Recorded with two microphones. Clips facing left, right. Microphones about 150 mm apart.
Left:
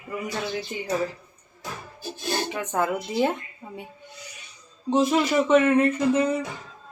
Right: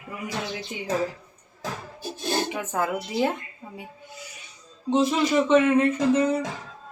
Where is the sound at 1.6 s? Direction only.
90° right.